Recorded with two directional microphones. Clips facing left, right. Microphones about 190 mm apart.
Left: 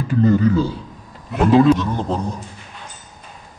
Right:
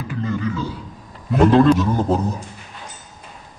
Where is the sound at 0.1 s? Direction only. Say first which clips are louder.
Left 10 dB; 40° left (ahead or behind).